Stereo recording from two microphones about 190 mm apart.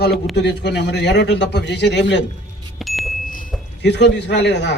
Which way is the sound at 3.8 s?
65° left (ahead or behind).